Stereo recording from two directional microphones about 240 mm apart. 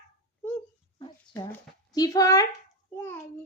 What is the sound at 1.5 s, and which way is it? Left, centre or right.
Speech, centre.